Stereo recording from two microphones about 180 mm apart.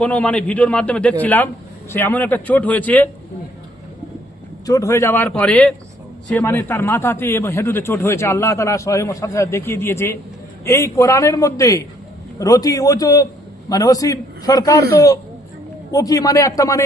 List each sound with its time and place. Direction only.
0.0 s a man's voice: 5° left (ahead or behind)
4.6 s a man's voice: 20° left (ahead or behind)